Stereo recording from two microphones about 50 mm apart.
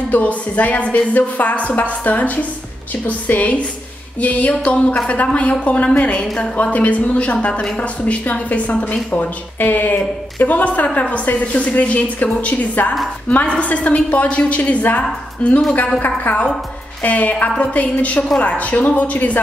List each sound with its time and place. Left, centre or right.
0.1 s a woman's voice: left